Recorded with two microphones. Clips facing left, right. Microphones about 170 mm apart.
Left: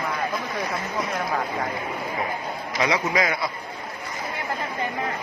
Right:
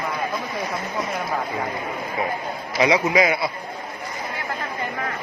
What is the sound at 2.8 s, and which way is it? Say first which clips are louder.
Speech: right 5 dB; 10° right (ahead or behind).